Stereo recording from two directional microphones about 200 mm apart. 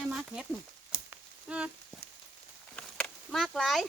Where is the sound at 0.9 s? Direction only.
5° right (ahead or behind).